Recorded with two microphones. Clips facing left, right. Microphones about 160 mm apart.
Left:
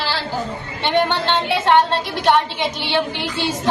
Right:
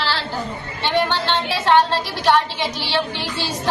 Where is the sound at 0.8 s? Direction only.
20° left (ahead or behind).